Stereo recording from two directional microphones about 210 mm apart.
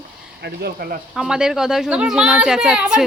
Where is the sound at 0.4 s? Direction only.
45° right (ahead or behind).